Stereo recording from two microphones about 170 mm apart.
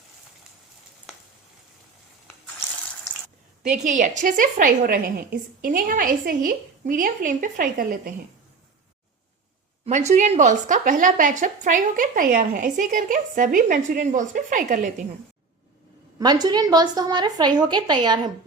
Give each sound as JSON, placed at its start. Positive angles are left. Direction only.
{"t": 3.8, "sound": "a woman's voice", "side_deg": -45}
{"t": 9.8, "sound": "a woman's voice", "side_deg": -40}
{"t": 16.1, "sound": "a woman's voice", "side_deg": -25}